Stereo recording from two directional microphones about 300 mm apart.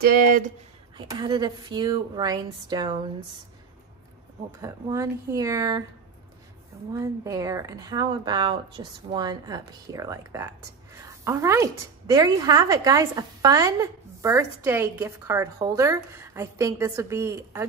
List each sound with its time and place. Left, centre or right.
0.0 s speech: right
0.9 s a woman's voice: centre
4.6 s a woman's voice: centre
6.9 s a woman's voice: centre